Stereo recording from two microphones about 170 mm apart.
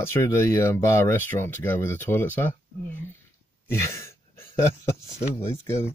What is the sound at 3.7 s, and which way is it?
Speech, 15° left (ahead or behind).